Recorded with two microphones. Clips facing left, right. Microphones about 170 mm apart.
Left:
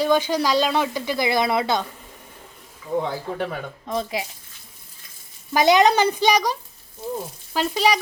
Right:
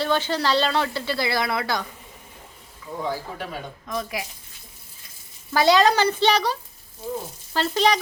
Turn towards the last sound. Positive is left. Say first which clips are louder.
# even
turn(degrees=10)  # may be behind; listen again after turning